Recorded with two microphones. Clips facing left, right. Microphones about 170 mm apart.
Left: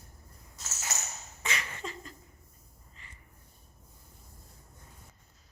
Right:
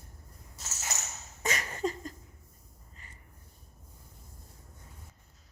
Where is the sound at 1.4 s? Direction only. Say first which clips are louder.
Right 6 dB; 40° right (ahead or behind).